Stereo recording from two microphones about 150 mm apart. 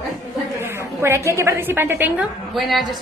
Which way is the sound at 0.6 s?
15° right (ahead or behind).